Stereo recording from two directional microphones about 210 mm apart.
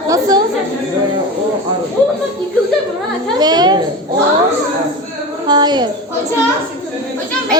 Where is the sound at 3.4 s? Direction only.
20° right (ahead or behind).